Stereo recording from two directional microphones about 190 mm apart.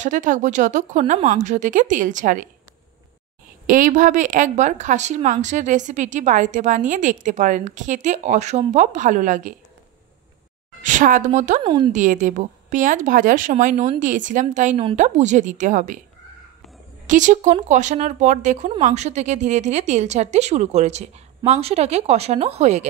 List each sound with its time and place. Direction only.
0.0 s a woman's voice: 40° right (ahead or behind)
3.6 s a woman's voice: 45° right (ahead or behind)
10.8 s a woman's voice: 40° right (ahead or behind)
11.6 s a woman's voice: 25° right (ahead or behind)
11.9 s a woman's voice: 40° right (ahead or behind)
17.0 s a woman's voice: 40° right (ahead or behind)